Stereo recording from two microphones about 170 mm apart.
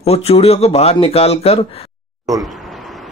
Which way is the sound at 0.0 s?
35° left (ahead or behind).